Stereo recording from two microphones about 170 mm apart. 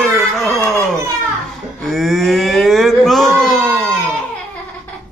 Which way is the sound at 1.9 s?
Centre (ahead or behind).